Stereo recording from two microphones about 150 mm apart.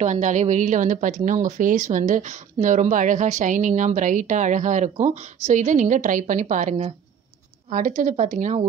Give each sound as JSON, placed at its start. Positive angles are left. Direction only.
{"t": 0.0, "sound": "a woman's voice", "side_deg": -55}